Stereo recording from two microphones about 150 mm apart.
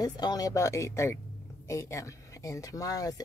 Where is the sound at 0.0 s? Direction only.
25° left (ahead or behind).